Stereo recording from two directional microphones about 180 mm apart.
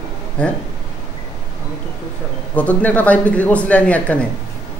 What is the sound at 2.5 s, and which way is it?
A man's voice, 10° left (ahead or behind).